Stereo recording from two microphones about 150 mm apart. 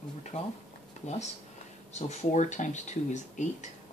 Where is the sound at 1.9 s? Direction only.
50° left (ahead or behind).